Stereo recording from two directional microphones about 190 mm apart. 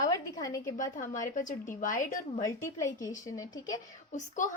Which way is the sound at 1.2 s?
40° left (ahead or behind).